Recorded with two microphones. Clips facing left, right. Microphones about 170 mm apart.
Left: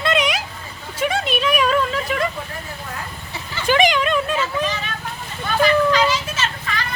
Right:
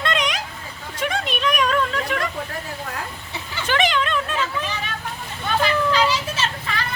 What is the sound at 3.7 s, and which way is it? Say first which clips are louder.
Speech: left 4 dB; 15° left (ahead or behind).